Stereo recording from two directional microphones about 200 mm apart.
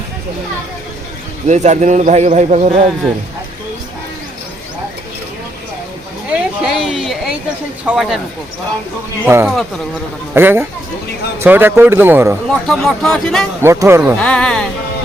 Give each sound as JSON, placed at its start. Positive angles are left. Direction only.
{"t": 1.5, "sound": "a man's voice", "side_deg": -35}
{"t": 6.2, "sound": "a sound", "side_deg": -5}
{"t": 7.9, "sound": "speech", "side_deg": 0}
{"t": 9.2, "sound": "a man's voice", "side_deg": -10}
{"t": 12.5, "sound": "speech", "side_deg": 0}
{"t": 13.6, "sound": "a man's voice", "side_deg": -10}
{"t": 14.2, "sound": "speech", "side_deg": 5}